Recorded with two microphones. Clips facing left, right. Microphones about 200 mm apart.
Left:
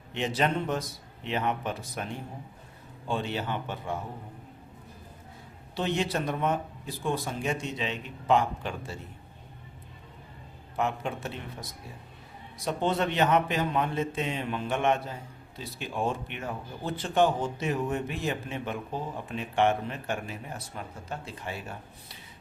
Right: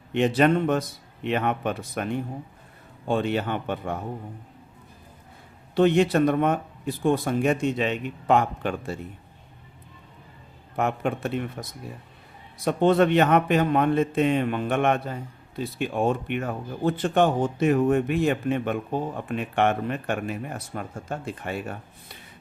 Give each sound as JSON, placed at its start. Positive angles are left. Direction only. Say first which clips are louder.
{"t": 0.1, "sound": "a man's voice", "louder": "right 8 dB", "side_deg": -55}
{"t": 5.7, "sound": "a man's voice", "louder": "right 10 dB", "side_deg": -55}
{"t": 10.8, "sound": "a man's voice", "louder": "right 5 dB", "side_deg": -55}